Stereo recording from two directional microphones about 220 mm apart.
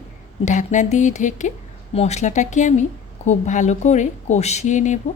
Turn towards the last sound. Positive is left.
turn(degrees=35)  # may be behind; listen again after turning